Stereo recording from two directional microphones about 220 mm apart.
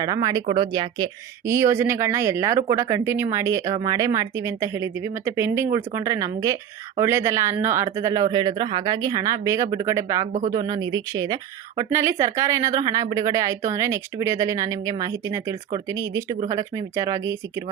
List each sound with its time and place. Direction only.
0.0 s speech: 15° right (ahead or behind)